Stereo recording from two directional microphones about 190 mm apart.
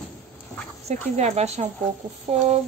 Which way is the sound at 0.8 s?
35° right (ahead or behind).